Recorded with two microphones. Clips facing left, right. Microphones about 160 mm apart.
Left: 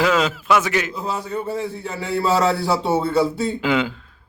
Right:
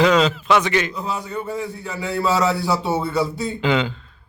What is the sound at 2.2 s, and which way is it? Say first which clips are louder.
Speech: left 1 dB; 30° left (ahead or behind).